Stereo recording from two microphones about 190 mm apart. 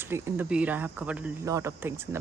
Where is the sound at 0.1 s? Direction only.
10° right (ahead or behind).